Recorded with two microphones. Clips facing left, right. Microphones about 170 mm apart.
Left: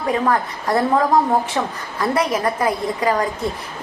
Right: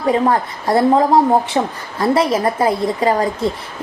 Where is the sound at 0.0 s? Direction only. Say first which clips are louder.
Right 4 dB; 25° right (ahead or behind).